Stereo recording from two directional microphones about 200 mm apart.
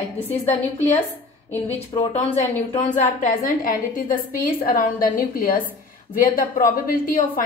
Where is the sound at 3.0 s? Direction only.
40° left (ahead or behind).